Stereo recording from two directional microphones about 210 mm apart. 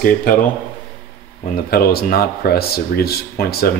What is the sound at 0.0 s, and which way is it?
Speech, 40° left (ahead or behind).